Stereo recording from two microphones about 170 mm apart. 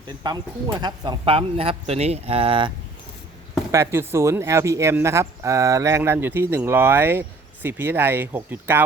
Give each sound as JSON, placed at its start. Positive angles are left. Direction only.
{"t": 0.2, "sound": "speech", "side_deg": -20}
{"t": 3.7, "sound": "speech", "side_deg": -15}